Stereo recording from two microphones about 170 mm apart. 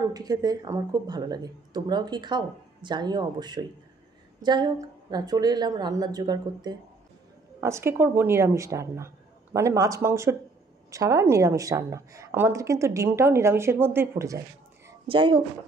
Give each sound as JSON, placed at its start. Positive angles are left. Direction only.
{"t": 0.1, "sound": "a woman's voice", "side_deg": -25}
{"t": 15.0, "sound": "speech", "side_deg": -30}